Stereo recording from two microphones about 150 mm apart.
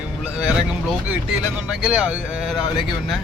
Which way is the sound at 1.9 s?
5° right (ahead or behind).